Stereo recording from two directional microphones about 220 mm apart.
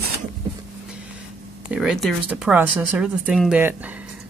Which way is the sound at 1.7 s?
5° right (ahead or behind).